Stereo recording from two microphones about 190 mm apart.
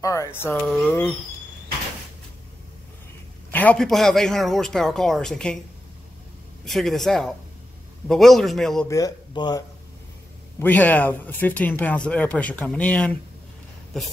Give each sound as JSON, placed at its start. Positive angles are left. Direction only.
{"t": 0.0, "sound": "speech", "side_deg": 15}
{"t": 0.7, "sound": "speech", "side_deg": 0}
{"t": 3.5, "sound": "speech", "side_deg": 5}
{"t": 6.6, "sound": "speech", "side_deg": 0}
{"t": 8.8, "sound": "speech", "side_deg": 20}
{"t": 10.6, "sound": "speech", "side_deg": 10}